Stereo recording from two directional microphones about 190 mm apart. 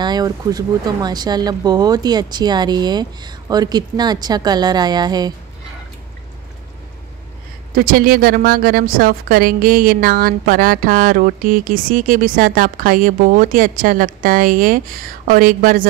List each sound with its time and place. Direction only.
0.0 s speech: 20° right (ahead or behind)
7.7 s a woman's voice: 50° right (ahead or behind)